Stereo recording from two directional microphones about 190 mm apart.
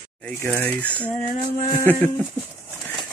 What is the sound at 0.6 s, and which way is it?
Speech, 10° left (ahead or behind).